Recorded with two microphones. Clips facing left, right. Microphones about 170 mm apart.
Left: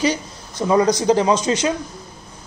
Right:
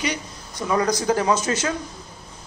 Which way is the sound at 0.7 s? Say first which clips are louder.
Left 5 dB; 20° left (ahead or behind).